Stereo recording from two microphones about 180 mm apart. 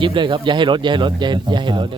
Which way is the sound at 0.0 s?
25° right (ahead or behind).